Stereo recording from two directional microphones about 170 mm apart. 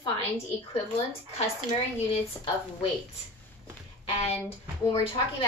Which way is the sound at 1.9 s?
30° left (ahead or behind).